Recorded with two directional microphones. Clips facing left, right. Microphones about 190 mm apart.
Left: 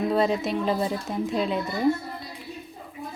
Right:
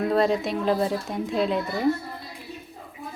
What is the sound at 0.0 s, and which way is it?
Speech, centre (ahead or behind).